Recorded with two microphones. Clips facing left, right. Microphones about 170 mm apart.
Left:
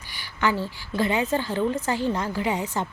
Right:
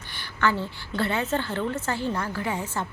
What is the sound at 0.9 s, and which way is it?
A woman's voice, 15° left (ahead or behind).